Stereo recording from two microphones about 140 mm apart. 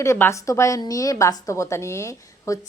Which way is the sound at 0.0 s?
20° left (ahead or behind).